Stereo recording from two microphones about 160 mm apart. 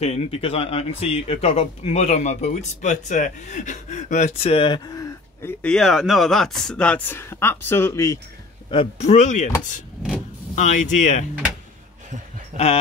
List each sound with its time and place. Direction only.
0.0 s speech: 40° left (ahead or behind); by 8.2 s 20° left (ahead or behind)
8.6 s speech: 35° left (ahead or behind)
10.5 s speech: 50° left (ahead or behind)